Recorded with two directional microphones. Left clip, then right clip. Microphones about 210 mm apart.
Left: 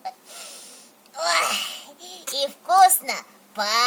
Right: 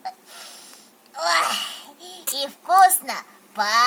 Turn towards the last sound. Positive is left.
turn(degrees=55)  # may be behind; listen again after turning